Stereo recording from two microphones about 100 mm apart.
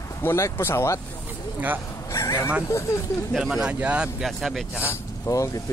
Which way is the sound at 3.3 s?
5° right (ahead or behind).